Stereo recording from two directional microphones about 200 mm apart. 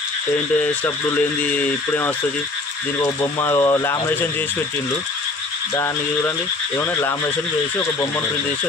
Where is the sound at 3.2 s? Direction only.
15° left (ahead or behind).